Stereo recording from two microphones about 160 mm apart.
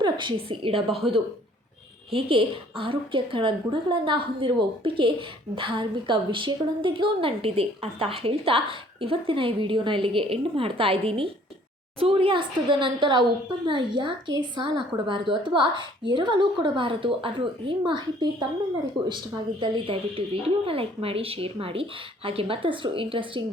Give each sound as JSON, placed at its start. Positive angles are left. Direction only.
{"t": 0.0, "sound": "a woman's voice", "side_deg": -30}
{"t": 2.1, "sound": "a woman's voice", "side_deg": -35}